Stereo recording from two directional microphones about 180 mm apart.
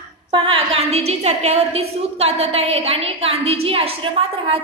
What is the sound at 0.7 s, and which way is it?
A woman's voice, 35° right (ahead or behind).